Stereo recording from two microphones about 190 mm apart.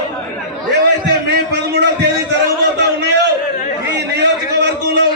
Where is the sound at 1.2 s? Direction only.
65° right (ahead or behind).